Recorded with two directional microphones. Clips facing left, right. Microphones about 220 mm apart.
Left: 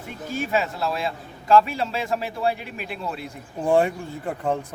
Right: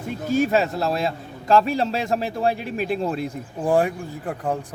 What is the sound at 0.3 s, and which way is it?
A man's voice, 40° right (ahead or behind).